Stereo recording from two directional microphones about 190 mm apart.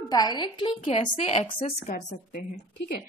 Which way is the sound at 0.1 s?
20° left (ahead or behind).